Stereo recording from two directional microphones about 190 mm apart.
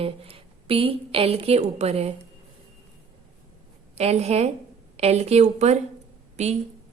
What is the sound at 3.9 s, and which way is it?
A woman's voice, 35° right (ahead or behind).